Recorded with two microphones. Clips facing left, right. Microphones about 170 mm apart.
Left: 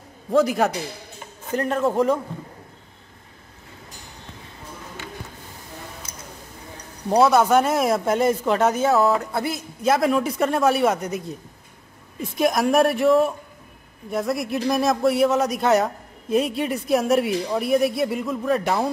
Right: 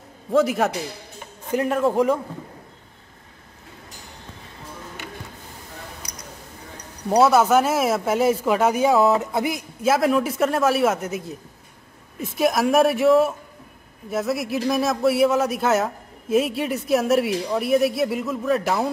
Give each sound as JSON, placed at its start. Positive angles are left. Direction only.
{"t": 0.3, "sound": "a man's voice", "side_deg": 0}
{"t": 7.1, "sound": "a man's voice", "side_deg": -5}
{"t": 9.9, "sound": "a man's voice", "side_deg": 0}
{"t": 12.4, "sound": "a man's voice", "side_deg": 0}